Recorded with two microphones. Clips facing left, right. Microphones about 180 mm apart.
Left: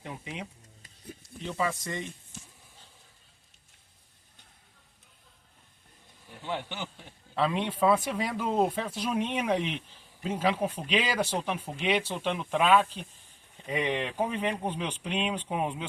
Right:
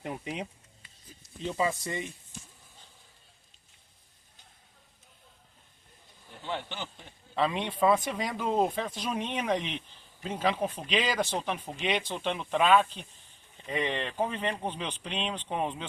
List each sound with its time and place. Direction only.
0.0 s speech: 40° right (ahead or behind)
1.5 s speech: 20° right (ahead or behind)
6.4 s speech: 5° left (ahead or behind)